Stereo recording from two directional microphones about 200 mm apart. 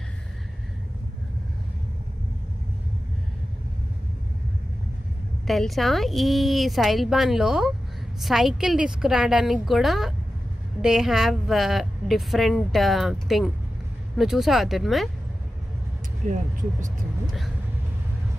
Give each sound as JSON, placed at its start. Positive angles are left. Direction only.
{"t": 5.5, "sound": "a woman's voice", "side_deg": 0}
{"t": 16.2, "sound": "speech", "side_deg": -40}